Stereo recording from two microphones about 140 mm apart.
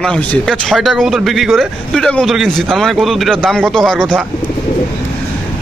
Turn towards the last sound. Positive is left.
turn(degrees=5)  # may be behind; listen again after turning